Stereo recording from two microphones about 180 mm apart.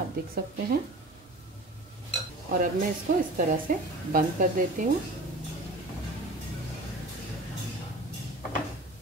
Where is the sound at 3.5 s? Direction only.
50° right (ahead or behind).